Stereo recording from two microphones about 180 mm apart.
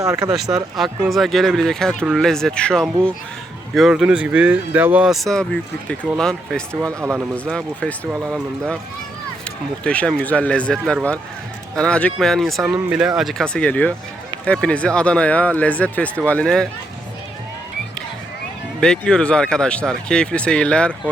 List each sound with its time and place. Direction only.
0.0 s speech: 20° right (ahead or behind)
0.3 s speech: centre (ahead or behind)
6.7 s speech: 15° right (ahead or behind)
7.3 s speech: 5° left (ahead or behind)
9.8 s speech: 5° left (ahead or behind)
18.8 s speech: 5° left (ahead or behind)